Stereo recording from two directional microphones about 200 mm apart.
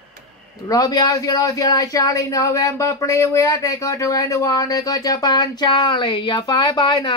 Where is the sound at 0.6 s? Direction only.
20° left (ahead or behind).